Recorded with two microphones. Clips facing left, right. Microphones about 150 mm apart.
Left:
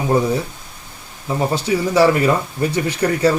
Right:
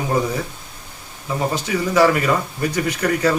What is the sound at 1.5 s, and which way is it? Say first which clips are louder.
Speech: left 2 dB; 30° left (ahead or behind).